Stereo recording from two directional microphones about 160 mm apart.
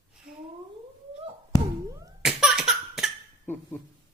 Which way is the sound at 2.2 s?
5° right (ahead or behind).